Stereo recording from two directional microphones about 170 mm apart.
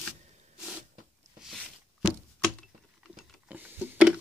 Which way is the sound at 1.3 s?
Centre (ahead or behind).